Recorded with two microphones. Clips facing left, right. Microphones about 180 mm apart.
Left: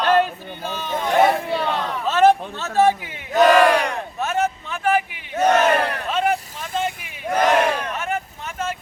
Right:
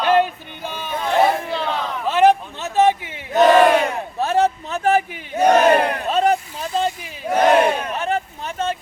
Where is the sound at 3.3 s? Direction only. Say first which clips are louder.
Right 2 dB; 25° right (ahead or behind).